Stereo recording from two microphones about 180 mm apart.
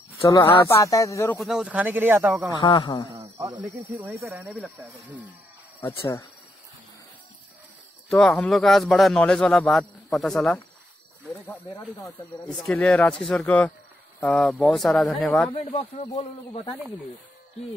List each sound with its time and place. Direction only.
0.2 s a man's voice: 15° left (ahead or behind)
1.4 s speech: 5° right (ahead or behind)
2.6 s speech: 20° left (ahead or behind)
3.1 s speech: 15° right (ahead or behind)
5.8 s a man's voice: 15° left (ahead or behind)
8.1 s speech: 5° left (ahead or behind)
11.4 s a man's voice: 15° left (ahead or behind)
12.4 s a man's voice: 5° left (ahead or behind)
15.5 s speech: 35° left (ahead or behind)